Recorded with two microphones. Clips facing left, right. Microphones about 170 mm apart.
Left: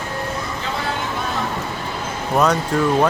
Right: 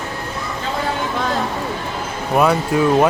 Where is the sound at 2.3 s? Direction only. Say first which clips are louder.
Right 2 dB; 10° right (ahead or behind).